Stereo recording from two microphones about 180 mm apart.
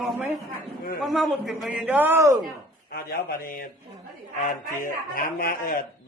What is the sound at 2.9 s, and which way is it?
A man's voice, 55° left (ahead or behind).